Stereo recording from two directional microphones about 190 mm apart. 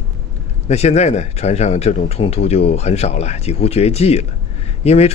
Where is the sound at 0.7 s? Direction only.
35° left (ahead or behind).